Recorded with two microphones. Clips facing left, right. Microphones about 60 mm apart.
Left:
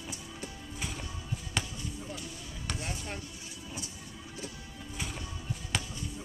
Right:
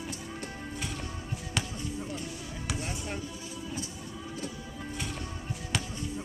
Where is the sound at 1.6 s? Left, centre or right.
Centre.